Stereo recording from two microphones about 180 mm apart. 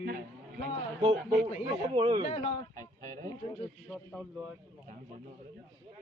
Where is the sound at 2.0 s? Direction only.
25° right (ahead or behind).